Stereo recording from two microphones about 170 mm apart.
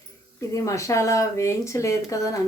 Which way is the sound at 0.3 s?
20° left (ahead or behind).